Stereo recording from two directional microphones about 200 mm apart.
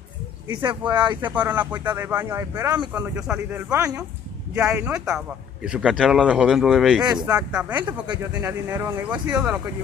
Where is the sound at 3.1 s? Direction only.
5° right (ahead or behind).